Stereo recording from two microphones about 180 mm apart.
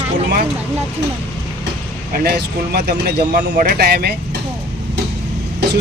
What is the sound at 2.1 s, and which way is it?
Speech, 60° right (ahead or behind).